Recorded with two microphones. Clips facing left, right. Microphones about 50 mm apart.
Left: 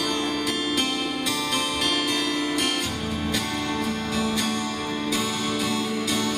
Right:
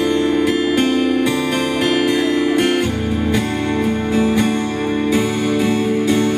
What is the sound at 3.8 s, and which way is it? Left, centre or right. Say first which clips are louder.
Music: right 9 dB; right.